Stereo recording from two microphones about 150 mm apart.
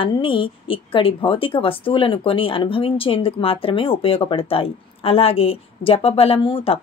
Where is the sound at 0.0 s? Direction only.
35° left (ahead or behind).